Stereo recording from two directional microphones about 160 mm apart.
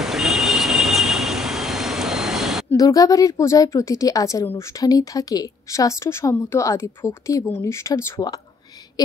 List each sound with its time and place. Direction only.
0.0 s vehicle: centre (ahead or behind)
2.7 s speech: 20° left (ahead or behind)